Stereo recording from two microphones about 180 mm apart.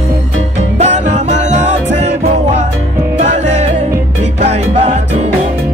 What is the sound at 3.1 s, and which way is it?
Music, 40° right (ahead or behind).